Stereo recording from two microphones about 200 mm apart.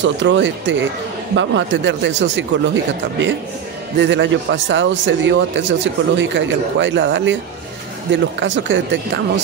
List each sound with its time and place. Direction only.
0.0 s speech: 65° right (ahead or behind)